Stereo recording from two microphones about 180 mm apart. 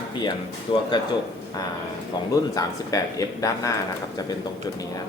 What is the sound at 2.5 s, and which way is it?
A man's voice, 20° left (ahead or behind).